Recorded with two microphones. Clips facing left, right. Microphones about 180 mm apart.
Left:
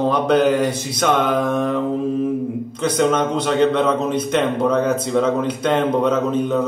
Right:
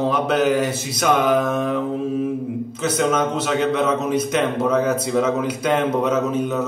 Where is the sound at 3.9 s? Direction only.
5° right (ahead or behind).